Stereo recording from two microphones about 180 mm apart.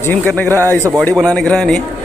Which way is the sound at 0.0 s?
10° left (ahead or behind).